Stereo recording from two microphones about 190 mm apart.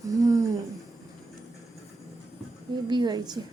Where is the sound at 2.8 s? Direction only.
25° right (ahead or behind).